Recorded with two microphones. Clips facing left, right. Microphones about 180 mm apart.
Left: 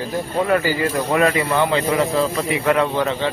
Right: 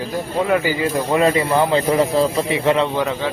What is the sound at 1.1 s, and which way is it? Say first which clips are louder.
A man's voice: right 2 dB; 25° right (ahead or behind).